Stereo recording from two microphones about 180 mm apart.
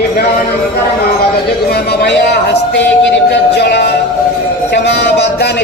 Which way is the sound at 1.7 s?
65° left (ahead or behind).